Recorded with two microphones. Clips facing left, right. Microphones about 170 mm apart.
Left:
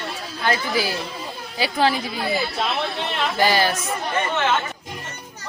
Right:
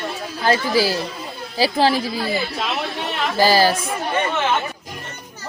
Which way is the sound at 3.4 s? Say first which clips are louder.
Right 4 dB; 35° right (ahead or behind).